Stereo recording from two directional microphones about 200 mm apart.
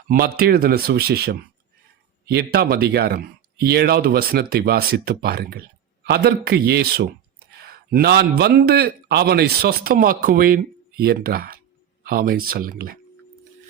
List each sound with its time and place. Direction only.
0.1 s speech: 50° right (ahead or behind)